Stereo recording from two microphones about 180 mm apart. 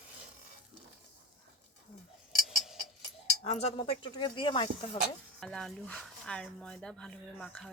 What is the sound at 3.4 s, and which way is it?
Speech, 35° left (ahead or behind).